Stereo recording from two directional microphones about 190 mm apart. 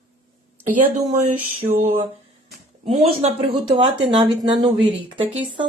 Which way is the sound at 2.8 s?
35° right (ahead or behind).